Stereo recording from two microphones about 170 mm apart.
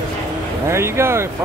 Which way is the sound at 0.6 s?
15° right (ahead or behind).